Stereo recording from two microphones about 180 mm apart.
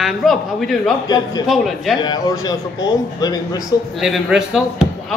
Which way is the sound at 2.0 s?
20° left (ahead or behind).